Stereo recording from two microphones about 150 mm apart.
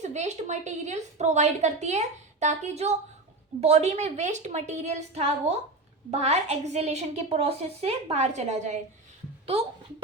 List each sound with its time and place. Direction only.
0.0 s a woman's voice: 50° right (ahead or behind)